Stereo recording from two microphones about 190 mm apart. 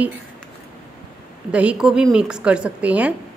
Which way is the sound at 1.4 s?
5° right (ahead or behind).